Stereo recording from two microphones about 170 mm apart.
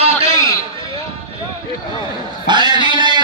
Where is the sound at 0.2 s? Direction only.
20° left (ahead or behind).